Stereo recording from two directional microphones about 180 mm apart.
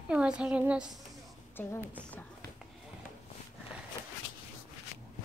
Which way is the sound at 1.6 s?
10° left (ahead or behind).